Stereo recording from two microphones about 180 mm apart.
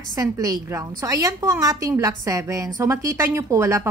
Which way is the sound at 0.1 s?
20° right (ahead or behind).